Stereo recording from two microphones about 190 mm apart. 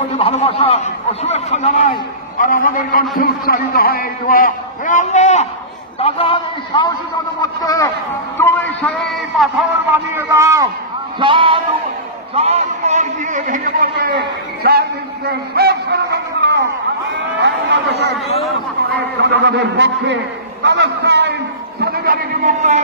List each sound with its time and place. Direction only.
0.2 s a man's voice: 30° left (ahead or behind); by 9.7 s centre (ahead or behind)
10.1 s a man's voice: 15° right (ahead or behind); by 18.1 s 60° right (ahead or behind)
19.2 s a man's voice: 65° right (ahead or behind)
21.8 s a man's voice: 50° right (ahead or behind)